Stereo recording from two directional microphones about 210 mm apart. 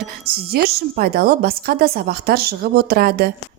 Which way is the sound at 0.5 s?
45° right (ahead or behind).